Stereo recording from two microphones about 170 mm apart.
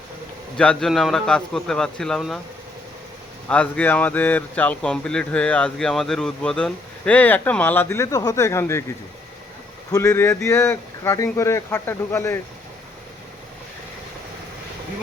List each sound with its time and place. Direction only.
0.5 s a man's voice: 5° left (ahead or behind)
3.5 s speech: 10° left (ahead or behind)
9.9 s speech: 20° left (ahead or behind)